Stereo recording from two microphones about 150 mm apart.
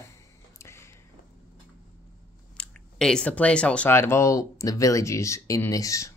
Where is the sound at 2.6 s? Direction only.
5° left (ahead or behind).